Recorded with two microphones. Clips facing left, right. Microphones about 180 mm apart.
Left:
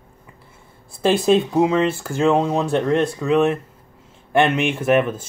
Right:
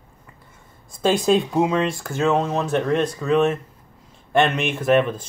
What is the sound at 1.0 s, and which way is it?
Speech, 5° left (ahead or behind).